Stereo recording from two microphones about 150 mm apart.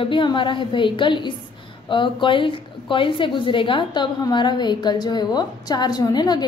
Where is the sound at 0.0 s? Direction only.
35° left (ahead or behind).